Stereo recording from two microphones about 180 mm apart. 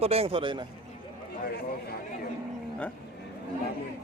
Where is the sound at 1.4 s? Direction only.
60° left (ahead or behind).